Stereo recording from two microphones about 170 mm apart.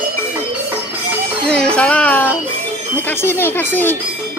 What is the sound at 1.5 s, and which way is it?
Speech, 5° left (ahead or behind).